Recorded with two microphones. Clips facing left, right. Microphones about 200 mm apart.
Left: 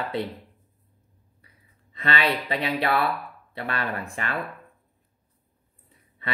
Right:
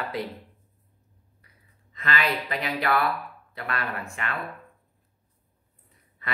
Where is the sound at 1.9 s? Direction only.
30° left (ahead or behind).